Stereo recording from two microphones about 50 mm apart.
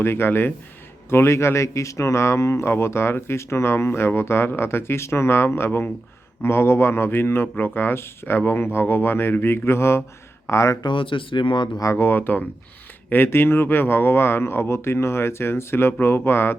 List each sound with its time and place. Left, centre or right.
0.0 s speech: left
1.1 s speech: left
10.4 s speech: left
11.9 s speech: left